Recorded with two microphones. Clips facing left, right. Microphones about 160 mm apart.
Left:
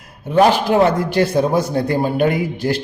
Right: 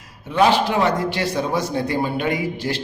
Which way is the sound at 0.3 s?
45° left (ahead or behind).